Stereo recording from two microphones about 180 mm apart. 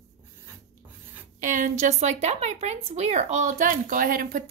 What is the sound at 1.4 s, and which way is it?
A woman's voice, 45° right (ahead or behind).